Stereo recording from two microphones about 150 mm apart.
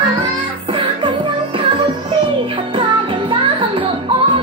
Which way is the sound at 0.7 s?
35° right (ahead or behind).